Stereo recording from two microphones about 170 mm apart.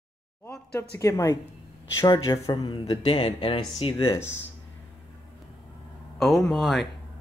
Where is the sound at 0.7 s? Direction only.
20° left (ahead or behind).